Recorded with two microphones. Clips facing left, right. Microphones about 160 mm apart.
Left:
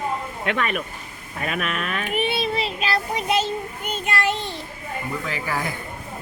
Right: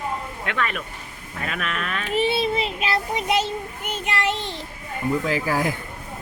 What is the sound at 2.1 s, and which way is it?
Child singing, 25° right (ahead or behind).